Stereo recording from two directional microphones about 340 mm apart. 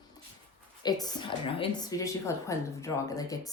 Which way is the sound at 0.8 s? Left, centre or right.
Centre.